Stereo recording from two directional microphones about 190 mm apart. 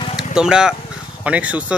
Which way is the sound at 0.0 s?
25° left (ahead or behind).